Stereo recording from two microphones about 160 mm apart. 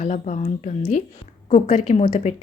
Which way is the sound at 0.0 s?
50° left (ahead or behind).